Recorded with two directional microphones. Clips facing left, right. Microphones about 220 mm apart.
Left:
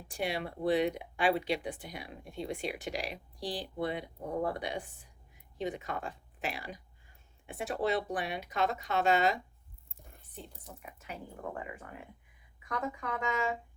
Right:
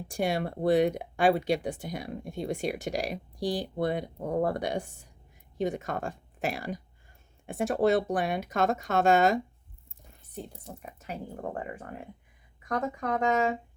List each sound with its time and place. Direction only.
0.1 s speech: 45° right (ahead or behind)